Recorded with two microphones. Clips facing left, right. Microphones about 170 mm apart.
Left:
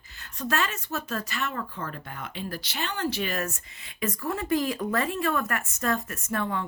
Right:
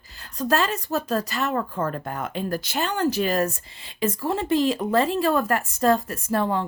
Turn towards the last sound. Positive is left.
turn(degrees=-30)  # may be behind; listen again after turning